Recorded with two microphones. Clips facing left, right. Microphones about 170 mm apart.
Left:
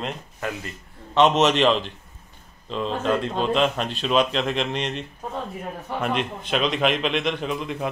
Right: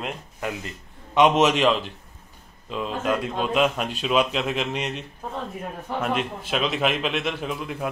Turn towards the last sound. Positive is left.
turn(degrees=0)  # may be behind; listen again after turning